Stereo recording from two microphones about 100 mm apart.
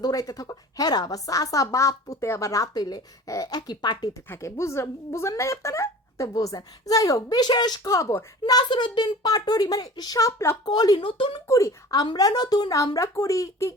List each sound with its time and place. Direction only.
0.0 s speech: 35° left (ahead or behind)
4.3 s speech: 30° left (ahead or behind)
8.5 s speech: 50° left (ahead or behind); by 10.6 s 30° left (ahead or behind)
10.7 s speech: 45° left (ahead or behind)
11.0 s speech: 60° left (ahead or behind)
11.4 s speech: 30° left (ahead or behind)